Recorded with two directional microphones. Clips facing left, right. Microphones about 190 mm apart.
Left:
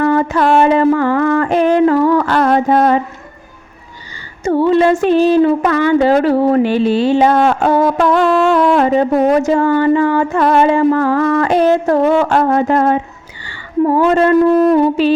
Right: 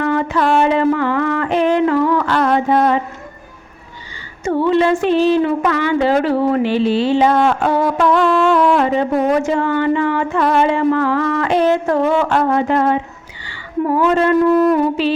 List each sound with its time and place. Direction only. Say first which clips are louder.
0.0 s a sound: left 4 dB; 40° left (ahead or behind)
4.4 s a woman's voice: left 3 dB; 40° left (ahead or behind)
14.6 s music: left 3 dB; 30° left (ahead or behind)